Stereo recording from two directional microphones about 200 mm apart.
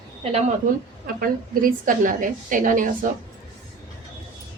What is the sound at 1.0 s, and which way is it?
A woman's voice, 45° right (ahead or behind).